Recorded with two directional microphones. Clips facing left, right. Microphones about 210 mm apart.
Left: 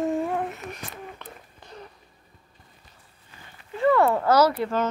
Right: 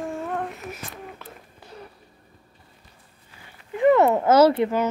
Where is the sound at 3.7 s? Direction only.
20° right (ahead or behind).